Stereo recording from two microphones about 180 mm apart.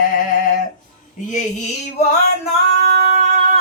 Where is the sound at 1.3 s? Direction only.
40° left (ahead or behind).